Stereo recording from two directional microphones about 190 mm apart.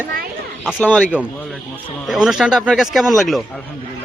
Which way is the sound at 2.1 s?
Centre (ahead or behind).